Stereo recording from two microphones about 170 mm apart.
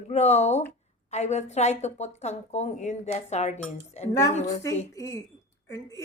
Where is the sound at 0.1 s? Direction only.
40° left (ahead or behind).